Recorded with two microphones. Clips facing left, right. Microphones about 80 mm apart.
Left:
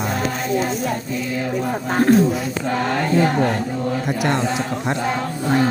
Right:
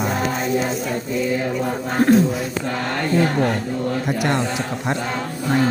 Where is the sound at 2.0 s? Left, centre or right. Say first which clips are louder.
Even; centre.